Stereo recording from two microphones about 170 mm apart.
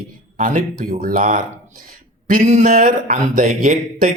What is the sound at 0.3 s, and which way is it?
Speech, 50° right (ahead or behind).